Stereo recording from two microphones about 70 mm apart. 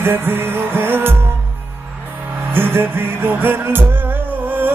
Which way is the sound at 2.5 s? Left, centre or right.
Right.